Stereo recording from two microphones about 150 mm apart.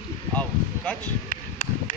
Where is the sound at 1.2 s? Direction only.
55° left (ahead or behind).